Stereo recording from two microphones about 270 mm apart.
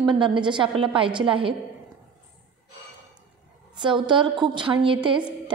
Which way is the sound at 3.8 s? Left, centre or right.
Centre.